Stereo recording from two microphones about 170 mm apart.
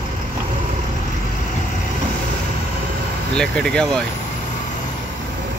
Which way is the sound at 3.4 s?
5° left (ahead or behind).